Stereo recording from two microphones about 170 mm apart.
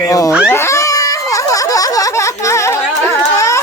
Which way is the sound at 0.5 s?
15° left (ahead or behind).